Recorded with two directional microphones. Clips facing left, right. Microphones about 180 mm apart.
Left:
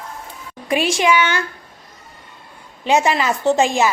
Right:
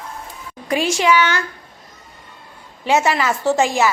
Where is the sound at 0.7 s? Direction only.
15° left (ahead or behind).